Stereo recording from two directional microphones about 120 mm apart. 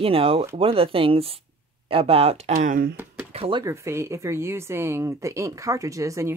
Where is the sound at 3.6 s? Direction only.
25° right (ahead or behind).